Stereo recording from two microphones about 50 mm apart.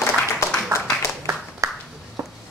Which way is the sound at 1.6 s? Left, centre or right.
Right.